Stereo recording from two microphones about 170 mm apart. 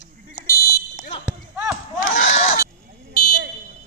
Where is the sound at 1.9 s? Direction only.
45° left (ahead or behind).